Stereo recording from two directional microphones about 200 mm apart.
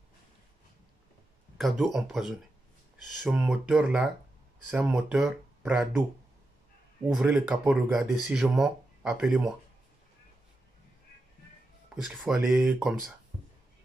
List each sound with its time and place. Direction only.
1.6 s speech: centre (ahead or behind)
7.2 s speech: 5° right (ahead or behind)
11.9 s speech: 5° right (ahead or behind)